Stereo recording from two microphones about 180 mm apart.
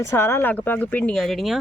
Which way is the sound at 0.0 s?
15° left (ahead or behind).